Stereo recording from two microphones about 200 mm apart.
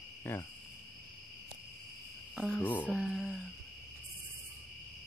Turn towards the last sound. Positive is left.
turn(degrees=0)  # may be behind; listen again after turning